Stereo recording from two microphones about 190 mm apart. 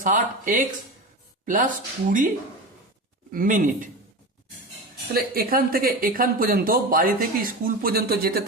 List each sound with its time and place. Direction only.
0.0 s speech: 45° right (ahead or behind)
3.3 s speech: 45° right (ahead or behind)
5.1 s speech: 50° right (ahead or behind)